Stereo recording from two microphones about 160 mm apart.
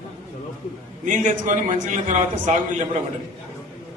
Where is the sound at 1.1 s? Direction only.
50° right (ahead or behind).